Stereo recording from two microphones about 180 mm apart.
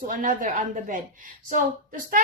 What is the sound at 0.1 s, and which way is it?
Speech, 50° right (ahead or behind).